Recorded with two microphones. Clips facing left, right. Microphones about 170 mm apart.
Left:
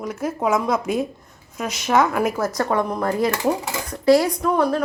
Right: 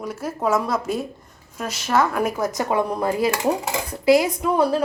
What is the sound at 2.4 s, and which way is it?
Speech, 20° right (ahead or behind).